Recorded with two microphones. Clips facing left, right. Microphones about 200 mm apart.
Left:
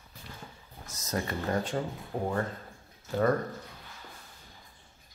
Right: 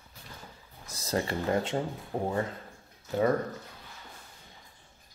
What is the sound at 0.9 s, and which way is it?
Speech, 30° right (ahead or behind).